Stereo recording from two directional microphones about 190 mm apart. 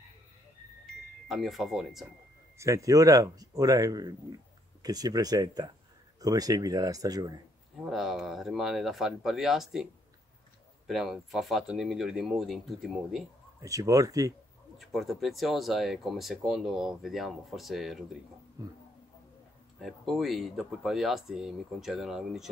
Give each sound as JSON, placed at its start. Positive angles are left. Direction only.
{"t": 1.3, "sound": "speech", "side_deg": 0}
{"t": 2.5, "sound": "speech", "side_deg": -15}
{"t": 7.8, "sound": "speech", "side_deg": 0}
{"t": 10.9, "sound": "speech", "side_deg": 0}
{"t": 13.6, "sound": "speech", "side_deg": -15}
{"t": 14.8, "sound": "speech", "side_deg": 0}
{"t": 18.6, "sound": "speech", "side_deg": -20}
{"t": 19.8, "sound": "speech", "side_deg": 0}